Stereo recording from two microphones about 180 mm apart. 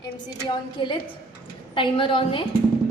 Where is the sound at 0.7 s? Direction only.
25° left (ahead or behind).